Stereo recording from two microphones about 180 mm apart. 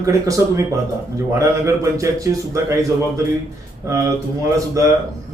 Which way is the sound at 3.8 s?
15° right (ahead or behind).